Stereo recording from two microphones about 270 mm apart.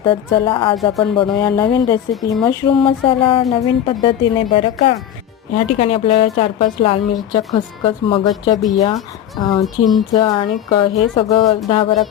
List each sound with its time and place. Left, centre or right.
0.0 s a woman's voice: centre